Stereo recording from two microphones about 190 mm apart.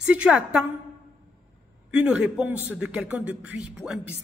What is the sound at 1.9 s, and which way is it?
A man's voice, 5° right (ahead or behind).